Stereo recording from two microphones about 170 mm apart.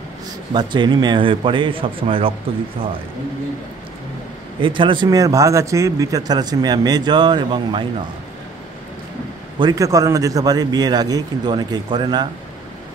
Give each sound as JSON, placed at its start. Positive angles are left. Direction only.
{"t": 0.5, "sound": "speech", "side_deg": -25}
{"t": 4.6, "sound": "speech", "side_deg": -30}
{"t": 9.6, "sound": "speech", "side_deg": -20}